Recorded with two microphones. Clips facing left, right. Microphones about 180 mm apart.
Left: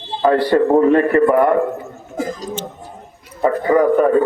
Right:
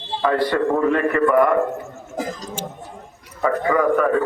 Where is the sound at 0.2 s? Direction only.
35° left (ahead or behind).